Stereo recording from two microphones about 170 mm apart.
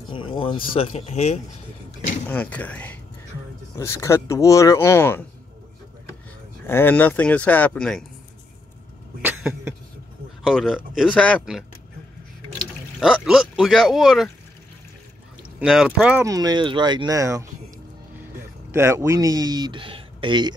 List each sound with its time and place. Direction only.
0.1 s speech: 30° left (ahead or behind)
2.2 s speech: 10° left (ahead or behind)
6.7 s speech: 10° left (ahead or behind)
9.2 s a sound: 10° right (ahead or behind)
10.4 s speech: centre (ahead or behind)
12.5 s speech: 5° right (ahead or behind)
15.6 s speech: 5° right (ahead or behind)
16.3 s speech: 25° right (ahead or behind)
18.7 s speech: 15° right (ahead or behind)